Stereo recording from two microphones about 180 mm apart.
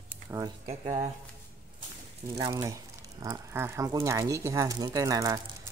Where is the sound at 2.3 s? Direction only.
20° right (ahead or behind).